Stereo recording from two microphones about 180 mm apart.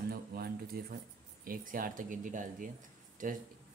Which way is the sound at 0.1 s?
55° right (ahead or behind).